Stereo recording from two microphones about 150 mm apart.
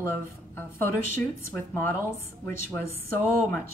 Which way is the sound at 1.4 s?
15° left (ahead or behind).